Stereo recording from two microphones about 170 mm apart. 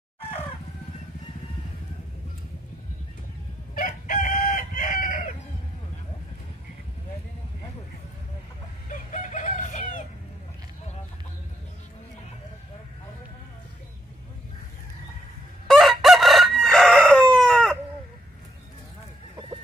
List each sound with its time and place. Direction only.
3.7 s chicken: 55° left (ahead or behind)
8.8 s chicken: 45° left (ahead or behind)
15.6 s chicken: centre (ahead or behind)